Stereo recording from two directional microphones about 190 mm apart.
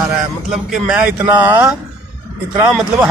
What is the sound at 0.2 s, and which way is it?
Speech, 5° right (ahead or behind).